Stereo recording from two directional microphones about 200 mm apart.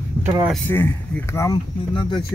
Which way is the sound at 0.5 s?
10° left (ahead or behind).